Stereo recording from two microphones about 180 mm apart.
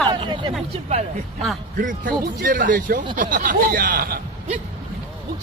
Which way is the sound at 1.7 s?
45° right (ahead or behind).